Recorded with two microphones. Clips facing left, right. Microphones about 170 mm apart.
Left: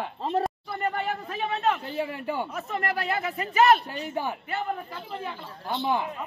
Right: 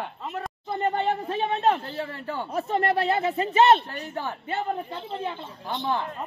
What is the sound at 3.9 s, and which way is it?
Speech, 10° left (ahead or behind).